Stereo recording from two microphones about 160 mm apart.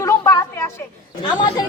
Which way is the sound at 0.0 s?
20° left (ahead or behind).